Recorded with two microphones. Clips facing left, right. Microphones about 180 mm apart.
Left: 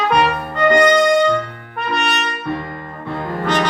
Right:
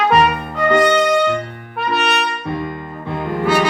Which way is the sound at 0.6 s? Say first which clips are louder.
Left 1 dB; 5° right (ahead or behind).